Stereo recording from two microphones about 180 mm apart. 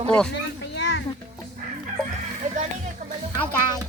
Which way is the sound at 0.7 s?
75° left (ahead or behind).